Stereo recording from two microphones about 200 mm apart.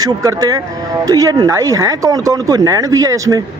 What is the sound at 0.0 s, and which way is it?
Speech, 20° right (ahead or behind).